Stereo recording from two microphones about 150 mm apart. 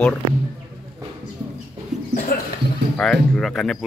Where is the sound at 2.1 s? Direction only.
75° left (ahead or behind).